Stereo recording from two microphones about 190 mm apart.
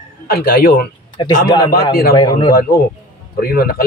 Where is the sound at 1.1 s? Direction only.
20° left (ahead or behind).